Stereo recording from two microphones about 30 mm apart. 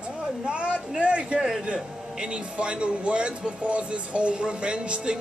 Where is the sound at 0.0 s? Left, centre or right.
Right.